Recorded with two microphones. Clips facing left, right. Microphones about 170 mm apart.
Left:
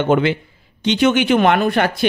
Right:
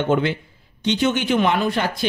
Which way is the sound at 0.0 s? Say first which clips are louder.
Left 4 dB; 90° left.